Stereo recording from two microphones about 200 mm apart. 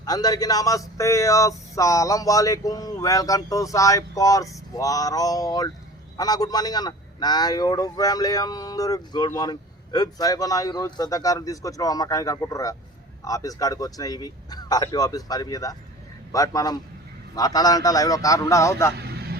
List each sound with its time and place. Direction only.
0.0 s a man's voice: 20° left (ahead or behind)
18.9 s vehicle: 55° right (ahead or behind)